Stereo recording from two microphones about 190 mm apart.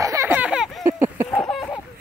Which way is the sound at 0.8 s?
15° right (ahead or behind).